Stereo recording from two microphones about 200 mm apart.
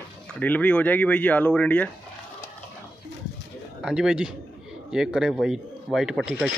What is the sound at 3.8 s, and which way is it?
Speech, 5° right (ahead or behind).